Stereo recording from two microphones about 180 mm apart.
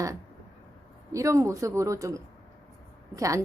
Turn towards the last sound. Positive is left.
turn(degrees=-15)  # may be behind; listen again after turning